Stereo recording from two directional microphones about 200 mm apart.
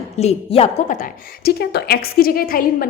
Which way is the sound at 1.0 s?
45° left (ahead or behind).